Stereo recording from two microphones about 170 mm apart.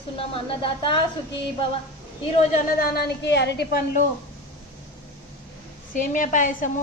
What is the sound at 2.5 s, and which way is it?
A woman's voice, 65° left (ahead or behind).